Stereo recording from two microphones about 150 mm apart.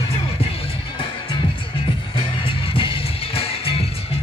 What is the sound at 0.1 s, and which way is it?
Music, 40° left (ahead or behind).